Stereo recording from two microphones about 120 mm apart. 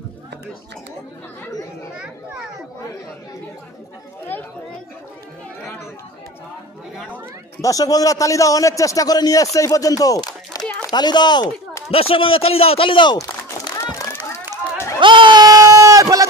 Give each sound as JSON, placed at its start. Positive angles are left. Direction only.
{"t": 7.6, "sound": "a man's voice", "side_deg": 30}
{"t": 11.9, "sound": "a man's voice", "side_deg": 55}
{"t": 15.0, "sound": "bleat", "side_deg": -45}